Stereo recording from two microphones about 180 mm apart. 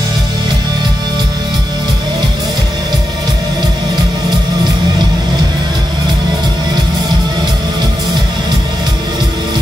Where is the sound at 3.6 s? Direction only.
25° right (ahead or behind).